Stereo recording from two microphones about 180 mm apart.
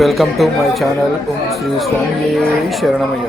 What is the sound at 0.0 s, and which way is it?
Speech, centre (ahead or behind).